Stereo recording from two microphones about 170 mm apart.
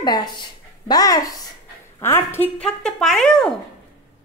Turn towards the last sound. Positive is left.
turn(degrees=5)  # may be behind; listen again after turning